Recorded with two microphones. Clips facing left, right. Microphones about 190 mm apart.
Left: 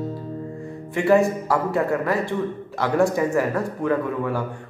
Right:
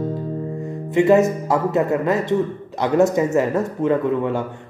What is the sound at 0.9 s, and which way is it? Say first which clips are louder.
Speech: right 3 dB; 20° right (ahead or behind).